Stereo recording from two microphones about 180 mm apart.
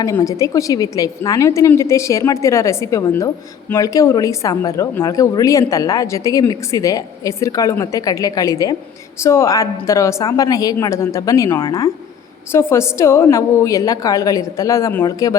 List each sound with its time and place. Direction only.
0.0 s a woman's voice: 20° left (ahead or behind)